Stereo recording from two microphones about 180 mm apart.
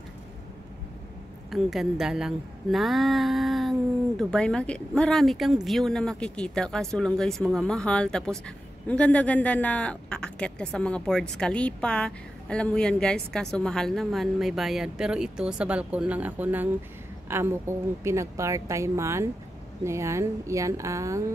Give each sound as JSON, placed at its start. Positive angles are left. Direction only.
{"t": 1.5, "sound": "speech", "side_deg": 0}